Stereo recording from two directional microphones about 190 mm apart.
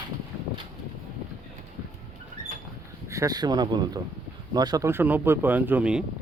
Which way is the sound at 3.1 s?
15° right (ahead or behind).